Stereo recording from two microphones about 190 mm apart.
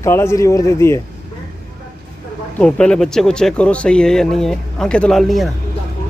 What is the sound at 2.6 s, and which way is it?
Speech, 5° left (ahead or behind).